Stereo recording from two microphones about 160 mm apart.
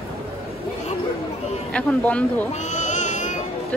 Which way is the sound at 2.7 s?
50° left (ahead or behind).